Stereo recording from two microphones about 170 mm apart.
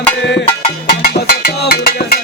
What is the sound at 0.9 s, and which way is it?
Music, 70° left (ahead or behind).